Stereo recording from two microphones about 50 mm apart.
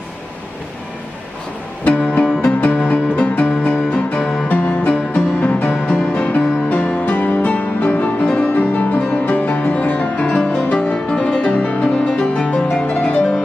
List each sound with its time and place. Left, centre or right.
2.4 s music: left
4.5 s music: left
12.1 s music: centre
12.7 s music: left